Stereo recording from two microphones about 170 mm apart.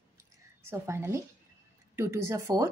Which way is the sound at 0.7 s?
15° right (ahead or behind).